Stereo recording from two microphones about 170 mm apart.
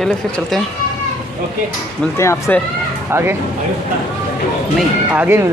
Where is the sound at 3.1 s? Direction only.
15° right (ahead or behind).